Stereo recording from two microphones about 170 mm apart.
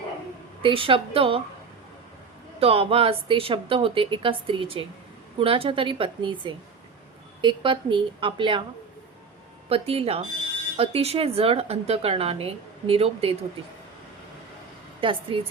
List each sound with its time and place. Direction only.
0.6 s speech: 30° right (ahead or behind)
2.6 s a woman's voice: 35° right (ahead or behind)
9.6 s speech: 35° right (ahead or behind)
15.0 s speech: 30° right (ahead or behind)